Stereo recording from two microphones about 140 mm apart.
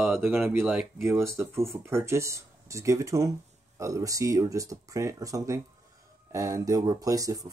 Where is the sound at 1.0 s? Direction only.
20° right (ahead or behind).